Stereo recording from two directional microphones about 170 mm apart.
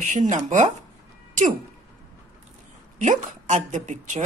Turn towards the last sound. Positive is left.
turn(degrees=-45)  # may be behind; listen again after turning